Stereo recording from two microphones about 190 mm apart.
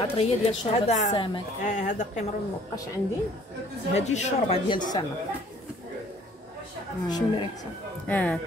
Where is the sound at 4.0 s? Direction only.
35° left (ahead or behind).